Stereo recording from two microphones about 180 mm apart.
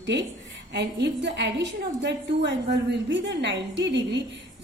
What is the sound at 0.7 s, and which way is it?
A woman's voice, 70° right (ahead or behind).